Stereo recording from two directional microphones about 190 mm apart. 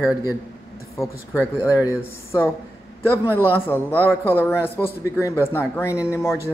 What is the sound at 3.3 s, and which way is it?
Speech, 10° right (ahead or behind).